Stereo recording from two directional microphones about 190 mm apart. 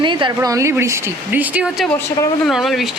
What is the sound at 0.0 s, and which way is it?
Speech, 25° right (ahead or behind).